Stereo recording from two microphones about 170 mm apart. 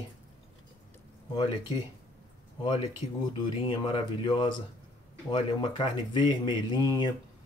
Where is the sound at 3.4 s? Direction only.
30° left (ahead or behind).